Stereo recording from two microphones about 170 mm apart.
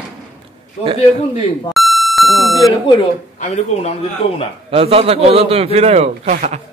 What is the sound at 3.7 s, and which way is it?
Speech, 35° left (ahead or behind).